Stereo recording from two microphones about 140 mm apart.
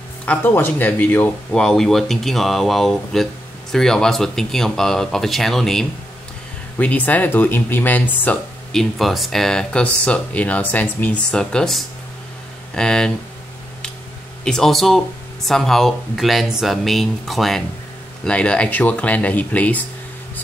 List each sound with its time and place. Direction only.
0.2 s speech: 10° left (ahead or behind)
8.9 s speech: centre (ahead or behind)
14.4 s speech: 5° left (ahead or behind)